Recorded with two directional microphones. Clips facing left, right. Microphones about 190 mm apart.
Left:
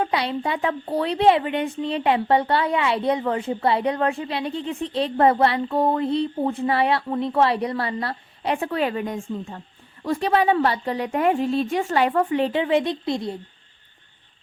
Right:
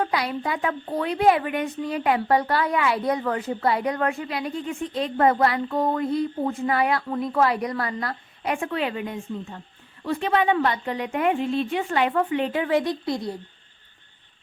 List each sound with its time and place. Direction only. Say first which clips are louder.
0.0 s a woman's voice: left 2 dB; 25° left (ahead or behind)
12.5 s a woman's voice: left 2 dB; 25° left (ahead or behind)